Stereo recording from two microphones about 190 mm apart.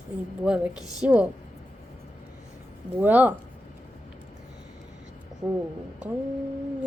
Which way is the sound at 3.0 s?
10° right (ahead or behind).